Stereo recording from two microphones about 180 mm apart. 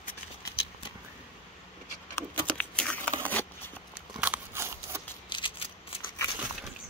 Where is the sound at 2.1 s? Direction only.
5° left (ahead or behind).